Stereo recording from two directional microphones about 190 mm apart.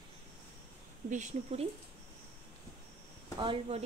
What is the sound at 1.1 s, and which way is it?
Speech, 35° right (ahead or behind).